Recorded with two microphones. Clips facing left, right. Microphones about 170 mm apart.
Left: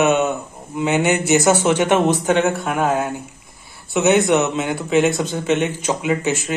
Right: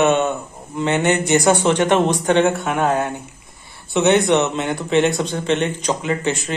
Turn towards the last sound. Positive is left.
turn(degrees=5)  # may be behind; listen again after turning